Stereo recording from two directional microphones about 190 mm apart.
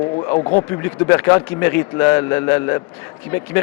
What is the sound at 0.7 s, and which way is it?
A man's voice, 15° left (ahead or behind).